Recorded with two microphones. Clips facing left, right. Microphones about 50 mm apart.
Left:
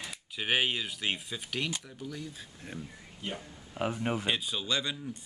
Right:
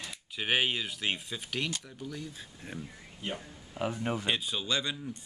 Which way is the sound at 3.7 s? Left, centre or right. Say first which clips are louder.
Left 1 dB; centre.